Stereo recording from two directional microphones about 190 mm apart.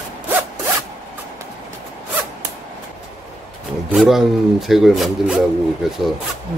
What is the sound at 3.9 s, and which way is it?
Speech, centre (ahead or behind).